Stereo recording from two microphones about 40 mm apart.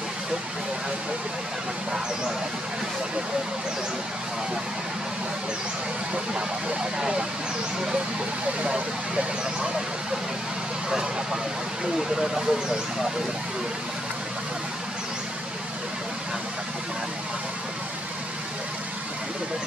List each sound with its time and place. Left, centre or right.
6.8 s speech: centre
12.2 s speech: centre